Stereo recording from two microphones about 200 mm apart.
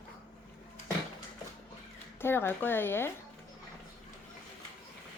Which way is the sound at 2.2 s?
10° left (ahead or behind).